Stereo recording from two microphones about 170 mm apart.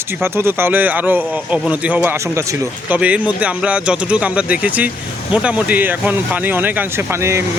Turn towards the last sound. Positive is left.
turn(degrees=-15)  # may be behind; listen again after turning